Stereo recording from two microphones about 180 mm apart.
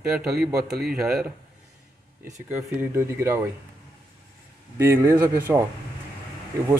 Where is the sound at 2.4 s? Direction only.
10° right (ahead or behind).